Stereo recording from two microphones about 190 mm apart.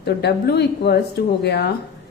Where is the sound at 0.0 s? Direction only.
60° left (ahead or behind).